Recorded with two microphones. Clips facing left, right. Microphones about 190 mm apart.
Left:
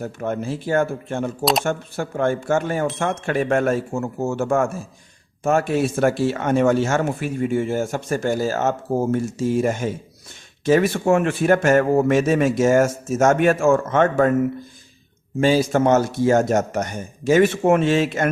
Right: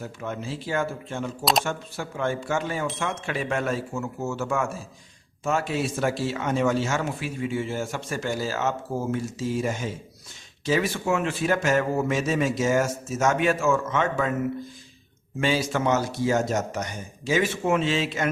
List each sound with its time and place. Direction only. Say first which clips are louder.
0.0 s speech: left 7 dB; 50° left (ahead or behind)
15.4 s speech: left 7 dB; 40° left (ahead or behind)